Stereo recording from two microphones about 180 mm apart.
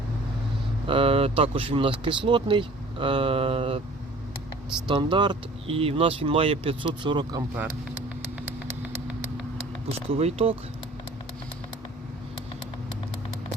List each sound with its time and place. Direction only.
0.9 s speech: 30° right (ahead or behind)
4.9 s speech: 25° right (ahead or behind)
8.4 s vehicle: 10° right (ahead or behind)
10.1 s speech: 35° right (ahead or behind)